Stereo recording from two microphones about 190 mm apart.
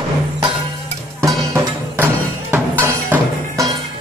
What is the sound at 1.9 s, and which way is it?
Music, 10° right (ahead or behind).